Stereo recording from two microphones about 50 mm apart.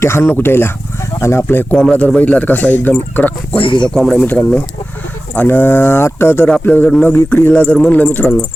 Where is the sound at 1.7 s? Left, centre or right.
Left.